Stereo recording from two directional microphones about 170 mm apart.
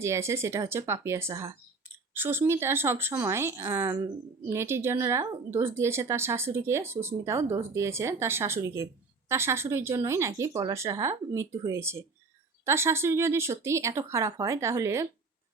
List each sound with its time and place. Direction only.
0.0 s speech: 15° right (ahead or behind)